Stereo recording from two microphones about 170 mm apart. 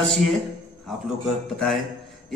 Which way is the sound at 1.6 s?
Centre (ahead or behind).